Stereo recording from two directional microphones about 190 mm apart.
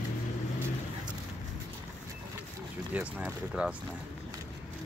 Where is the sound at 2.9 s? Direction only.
10° right (ahead or behind).